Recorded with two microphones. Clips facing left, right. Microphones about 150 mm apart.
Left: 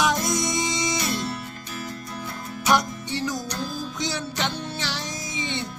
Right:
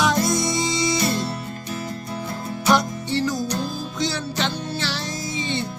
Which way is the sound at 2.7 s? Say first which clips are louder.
Right 3 dB; 15° left (ahead or behind).